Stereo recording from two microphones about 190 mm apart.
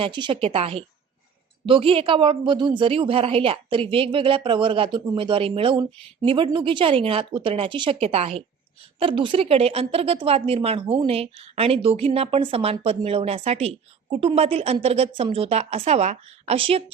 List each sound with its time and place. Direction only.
0.0 s a woman's voice: 25° right (ahead or behind)